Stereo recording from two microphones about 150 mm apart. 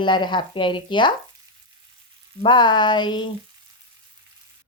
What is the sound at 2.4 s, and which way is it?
Speech, 30° left (ahead or behind).